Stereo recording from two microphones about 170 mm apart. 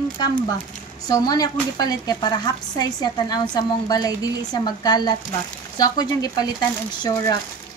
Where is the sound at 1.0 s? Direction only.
20° left (ahead or behind).